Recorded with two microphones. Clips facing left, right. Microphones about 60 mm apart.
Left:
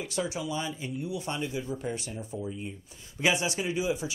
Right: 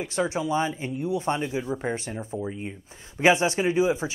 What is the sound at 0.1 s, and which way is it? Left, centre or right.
Speech, right.